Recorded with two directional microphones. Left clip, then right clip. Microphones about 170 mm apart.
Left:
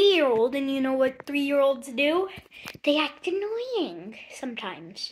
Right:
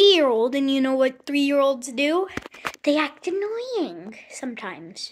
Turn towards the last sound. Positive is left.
turn(degrees=-35)  # may be behind; listen again after turning